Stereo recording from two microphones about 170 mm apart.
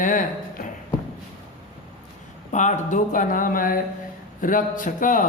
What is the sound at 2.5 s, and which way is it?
Speech, 45° left (ahead or behind).